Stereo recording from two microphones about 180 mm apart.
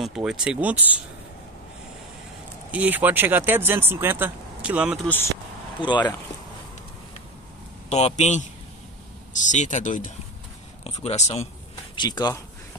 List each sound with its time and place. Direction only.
0.0 s speech: centre (ahead or behind)
2.7 s speech: 10° right (ahead or behind)
5.8 s speech: 25° left (ahead or behind)
7.9 s speech: 40° left (ahead or behind)
11.9 s speech: 25° left (ahead or behind)